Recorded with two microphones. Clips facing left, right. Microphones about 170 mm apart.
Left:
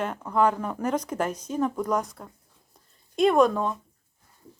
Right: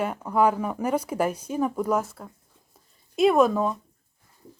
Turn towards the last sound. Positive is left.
turn(degrees=-5)  # may be behind; listen again after turning